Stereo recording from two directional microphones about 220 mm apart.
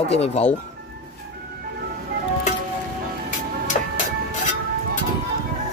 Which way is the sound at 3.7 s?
35° left (ahead or behind).